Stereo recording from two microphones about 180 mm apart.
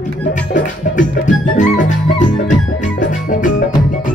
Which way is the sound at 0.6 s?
45° left (ahead or behind).